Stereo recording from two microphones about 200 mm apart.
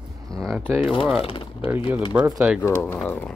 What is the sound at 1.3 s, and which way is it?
Speech, 25° left (ahead or behind).